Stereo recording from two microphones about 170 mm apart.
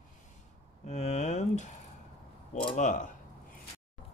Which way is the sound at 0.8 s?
40° left (ahead or behind).